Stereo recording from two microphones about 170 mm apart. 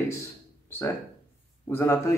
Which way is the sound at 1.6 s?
15° left (ahead or behind).